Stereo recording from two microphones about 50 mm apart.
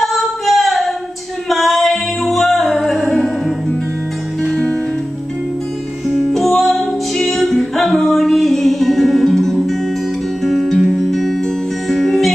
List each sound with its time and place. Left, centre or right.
0.0 s singing: centre
1.5 s music: centre
4.5 s music: left
6.0 s music: centre